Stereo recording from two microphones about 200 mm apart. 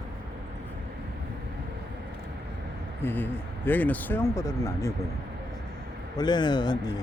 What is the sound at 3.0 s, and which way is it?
Speech, 10° left (ahead or behind).